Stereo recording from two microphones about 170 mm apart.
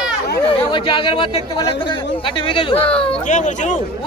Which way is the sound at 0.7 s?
30° left (ahead or behind).